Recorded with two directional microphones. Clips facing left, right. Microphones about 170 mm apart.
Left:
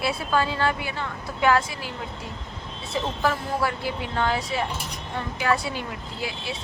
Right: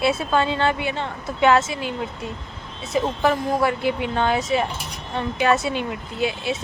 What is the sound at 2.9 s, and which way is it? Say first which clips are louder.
A woman's voice: right 5 dB; 20° right (ahead or behind).